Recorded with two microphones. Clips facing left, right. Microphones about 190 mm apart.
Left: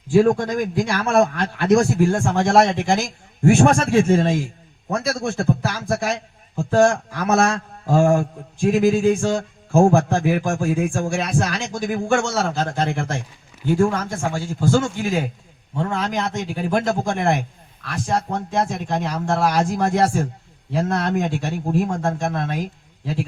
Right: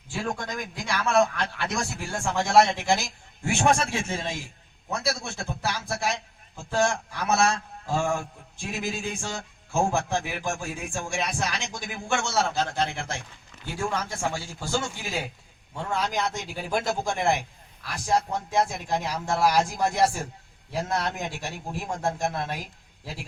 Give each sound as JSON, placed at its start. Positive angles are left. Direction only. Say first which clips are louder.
{"t": 0.1, "sound": "a man's voice", "louder": "left 15 dB", "side_deg": 50}
{"t": 16.3, "sound": "a man's voice", "louder": "left 7 dB", "side_deg": 55}